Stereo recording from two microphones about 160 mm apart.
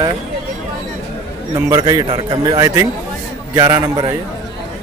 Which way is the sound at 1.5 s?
20° right (ahead or behind).